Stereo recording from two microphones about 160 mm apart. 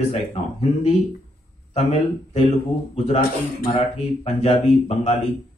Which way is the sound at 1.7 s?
40° left (ahead or behind).